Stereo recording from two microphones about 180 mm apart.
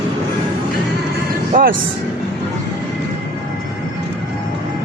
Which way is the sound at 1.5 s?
50° right (ahead or behind).